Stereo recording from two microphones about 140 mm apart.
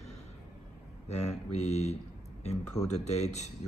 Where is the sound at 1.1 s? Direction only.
55° left (ahead or behind).